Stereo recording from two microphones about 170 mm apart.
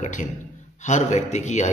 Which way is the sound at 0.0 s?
45° left (ahead or behind).